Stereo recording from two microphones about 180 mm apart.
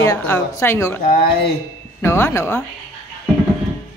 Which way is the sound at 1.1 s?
60° left (ahead or behind).